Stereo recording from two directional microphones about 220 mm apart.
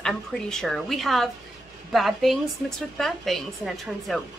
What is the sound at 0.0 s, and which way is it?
Speech, centre (ahead or behind).